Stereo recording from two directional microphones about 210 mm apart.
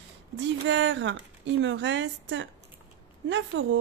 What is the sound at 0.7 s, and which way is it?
A woman's voice, 60° right (ahead or behind).